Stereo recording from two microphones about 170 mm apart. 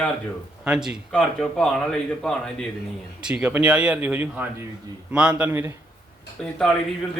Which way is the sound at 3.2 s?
5° right (ahead or behind).